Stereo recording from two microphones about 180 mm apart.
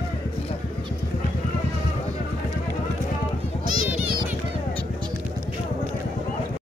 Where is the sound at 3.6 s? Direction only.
50° right (ahead or behind).